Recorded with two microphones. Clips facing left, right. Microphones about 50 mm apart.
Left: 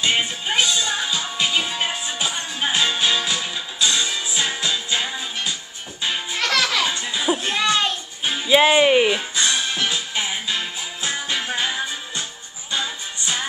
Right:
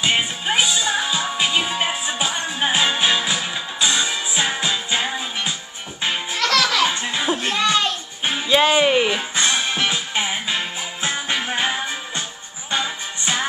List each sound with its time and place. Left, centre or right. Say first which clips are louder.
0.0 s music: right 1 dB; centre
2.6 s music: right 2 dB; right
6.4 s music: right 2 dB; centre
6.9 s music: right 2 dB; right
8.5 s speech: left 2 dB; centre
9.3 s music: right 2 dB; right